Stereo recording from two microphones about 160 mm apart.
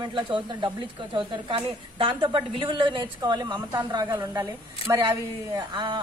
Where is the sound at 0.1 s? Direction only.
30° right (ahead or behind).